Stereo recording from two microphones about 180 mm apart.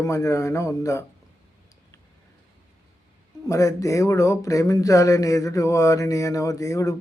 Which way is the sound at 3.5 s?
15° left (ahead or behind).